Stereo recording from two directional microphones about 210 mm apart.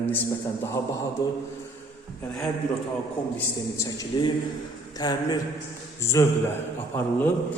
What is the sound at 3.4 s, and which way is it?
A man's voice, 15° left (ahead or behind).